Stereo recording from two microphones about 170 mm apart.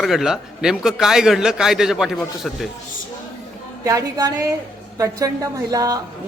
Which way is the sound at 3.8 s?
20° right (ahead or behind).